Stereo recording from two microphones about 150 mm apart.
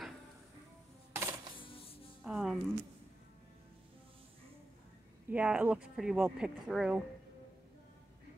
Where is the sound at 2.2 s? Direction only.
Centre (ahead or behind).